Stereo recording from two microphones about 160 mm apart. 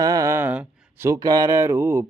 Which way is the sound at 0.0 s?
20° right (ahead or behind).